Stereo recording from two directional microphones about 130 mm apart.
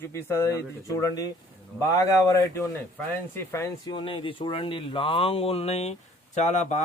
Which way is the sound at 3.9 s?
40° left (ahead or behind).